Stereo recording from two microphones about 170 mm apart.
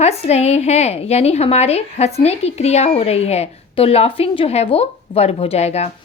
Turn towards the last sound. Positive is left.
turn(degrees=40)  # may be behind; listen again after turning